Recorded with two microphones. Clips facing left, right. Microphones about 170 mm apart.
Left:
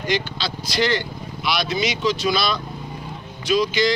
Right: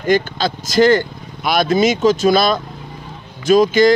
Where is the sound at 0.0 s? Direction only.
50° right (ahead or behind).